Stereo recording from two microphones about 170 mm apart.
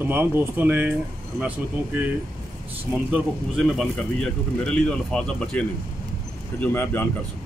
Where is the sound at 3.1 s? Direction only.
Centre (ahead or behind).